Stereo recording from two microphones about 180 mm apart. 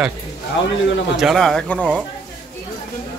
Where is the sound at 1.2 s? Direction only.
Centre (ahead or behind).